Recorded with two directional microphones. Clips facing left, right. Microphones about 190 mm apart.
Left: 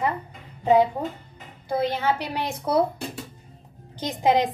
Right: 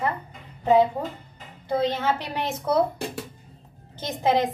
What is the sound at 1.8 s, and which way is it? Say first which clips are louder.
A woman's voice: left 1 dB; 15° left (ahead or behind).